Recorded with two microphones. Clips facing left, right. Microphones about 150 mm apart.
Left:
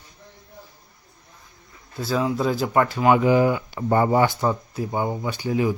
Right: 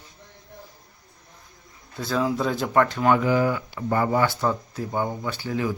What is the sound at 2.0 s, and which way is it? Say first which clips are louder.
Speech: left 1 dB; centre (ahead or behind).